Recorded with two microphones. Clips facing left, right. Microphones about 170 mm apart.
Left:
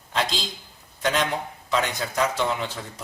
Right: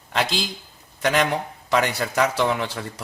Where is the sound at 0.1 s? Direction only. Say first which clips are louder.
Right 3 dB; 75° right (ahead or behind).